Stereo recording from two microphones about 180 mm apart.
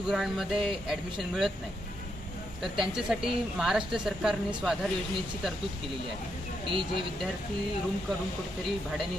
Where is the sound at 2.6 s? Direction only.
Centre (ahead or behind).